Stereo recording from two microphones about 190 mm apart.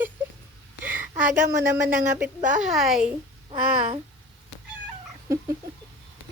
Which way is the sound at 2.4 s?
40° right (ahead or behind).